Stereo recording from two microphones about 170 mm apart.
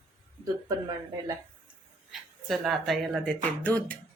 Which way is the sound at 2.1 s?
Centre (ahead or behind).